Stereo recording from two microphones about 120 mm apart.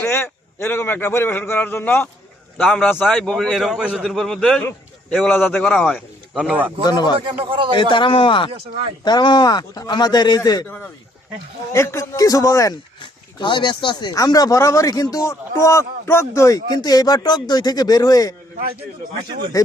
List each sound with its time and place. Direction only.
0.1 s a man's voice: 20° left (ahead or behind)
6.3 s a man's voice: 10° right (ahead or behind)
6.8 s speech: 35° left (ahead or behind)
7.3 s speech: 45° right (ahead or behind)
7.8 s a man's voice: 40° left (ahead or behind)
11.7 s a man's voice: 25° left (ahead or behind)
13.0 s speech: 40° left (ahead or behind)
19.6 s a man's voice: 30° left (ahead or behind)